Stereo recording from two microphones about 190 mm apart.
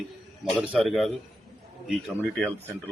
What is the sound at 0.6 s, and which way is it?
Speech, centre (ahead or behind).